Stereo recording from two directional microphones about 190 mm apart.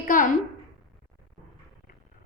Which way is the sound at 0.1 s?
45° left (ahead or behind).